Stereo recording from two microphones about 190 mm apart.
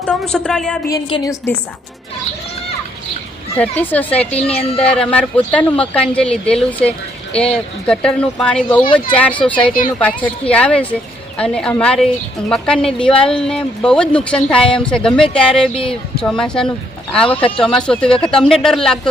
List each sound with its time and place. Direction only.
0.0 s speech: 5° left (ahead or behind)
0.9 s a woman's voice: 20° left (ahead or behind)
3.6 s speech: 10° left (ahead or behind)